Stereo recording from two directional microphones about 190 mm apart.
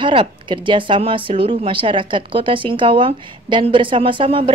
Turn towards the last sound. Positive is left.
turn(degrees=-25)  # may be behind; listen again after turning